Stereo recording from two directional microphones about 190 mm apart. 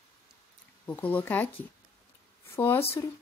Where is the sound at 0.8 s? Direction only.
10° left (ahead or behind).